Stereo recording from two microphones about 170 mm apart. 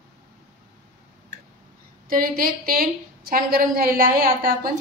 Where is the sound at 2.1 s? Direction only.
55° right (ahead or behind).